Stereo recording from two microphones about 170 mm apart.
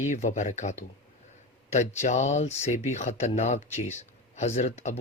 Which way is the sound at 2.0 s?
45° left (ahead or behind).